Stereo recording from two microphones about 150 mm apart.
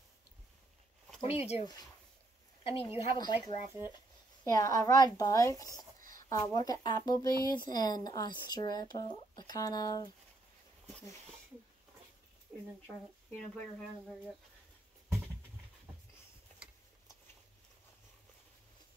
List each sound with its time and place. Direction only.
1.2 s speech: 45° left (ahead or behind)
2.6 s a woman's voice: 40° left (ahead or behind)
3.2 s speech: 30° left (ahead or behind)
5.9 s a sound: 65° right (ahead or behind)
6.2 s speech: 25° left (ahead or behind)